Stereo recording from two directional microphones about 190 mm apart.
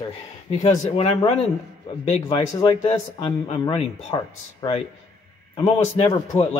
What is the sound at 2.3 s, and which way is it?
A man's voice, 25° left (ahead or behind).